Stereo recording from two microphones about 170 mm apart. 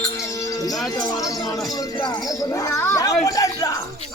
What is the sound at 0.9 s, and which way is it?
Speech, 20° left (ahead or behind).